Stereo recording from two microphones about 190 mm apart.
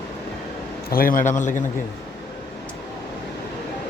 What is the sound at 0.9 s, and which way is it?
Speech, 50° left (ahead or behind).